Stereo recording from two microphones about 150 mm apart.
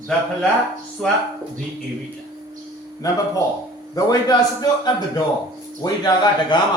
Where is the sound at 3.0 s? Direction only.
25° left (ahead or behind).